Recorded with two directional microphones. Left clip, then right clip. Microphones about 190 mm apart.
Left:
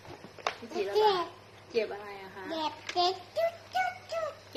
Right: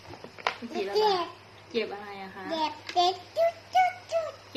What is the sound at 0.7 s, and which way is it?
Speech, 15° right (ahead or behind).